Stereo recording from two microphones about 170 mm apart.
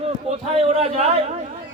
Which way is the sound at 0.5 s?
35° right (ahead or behind).